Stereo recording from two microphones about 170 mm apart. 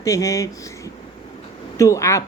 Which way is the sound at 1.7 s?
20° left (ahead or behind).